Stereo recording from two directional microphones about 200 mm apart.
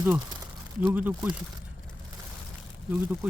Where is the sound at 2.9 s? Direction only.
5° right (ahead or behind).